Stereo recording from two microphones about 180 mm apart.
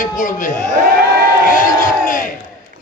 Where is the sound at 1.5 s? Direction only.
50° left (ahead or behind).